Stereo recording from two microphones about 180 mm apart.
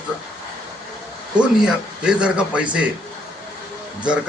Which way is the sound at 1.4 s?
5° right (ahead or behind).